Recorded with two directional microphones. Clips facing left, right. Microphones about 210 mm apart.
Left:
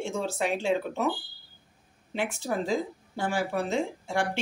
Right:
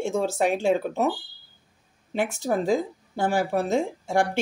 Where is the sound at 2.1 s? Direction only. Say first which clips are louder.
Right 5 dB; 45° right (ahead or behind).